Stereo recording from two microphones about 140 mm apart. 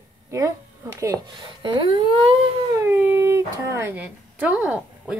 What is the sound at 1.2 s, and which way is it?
Speech, 35° right (ahead or behind).